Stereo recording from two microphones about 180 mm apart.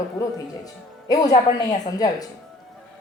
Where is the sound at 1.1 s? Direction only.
20° left (ahead or behind).